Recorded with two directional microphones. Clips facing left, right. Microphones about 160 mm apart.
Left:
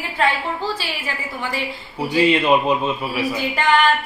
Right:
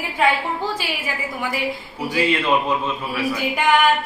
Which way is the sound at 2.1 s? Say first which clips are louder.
Left 4 dB; 20° left (ahead or behind).